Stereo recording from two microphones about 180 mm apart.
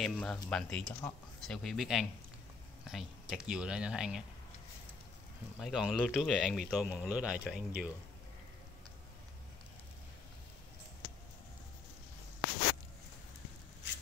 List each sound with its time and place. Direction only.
0.0 s speech: 5° left (ahead or behind)
5.6 s speech: 5° right (ahead or behind)